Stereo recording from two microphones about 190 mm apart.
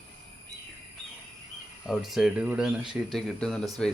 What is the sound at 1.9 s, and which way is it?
Speech, centre (ahead or behind).